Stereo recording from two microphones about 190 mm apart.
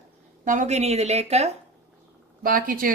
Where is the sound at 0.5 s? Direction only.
40° right (ahead or behind).